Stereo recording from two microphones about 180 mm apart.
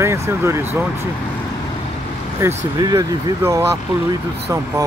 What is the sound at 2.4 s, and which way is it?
Speech, 15° right (ahead or behind).